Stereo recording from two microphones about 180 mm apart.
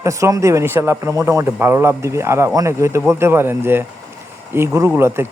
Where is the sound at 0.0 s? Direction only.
15° right (ahead or behind).